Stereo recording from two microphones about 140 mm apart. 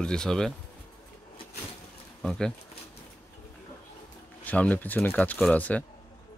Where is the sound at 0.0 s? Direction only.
5° left (ahead or behind).